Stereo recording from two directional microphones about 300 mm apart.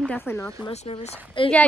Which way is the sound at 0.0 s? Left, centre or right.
Centre.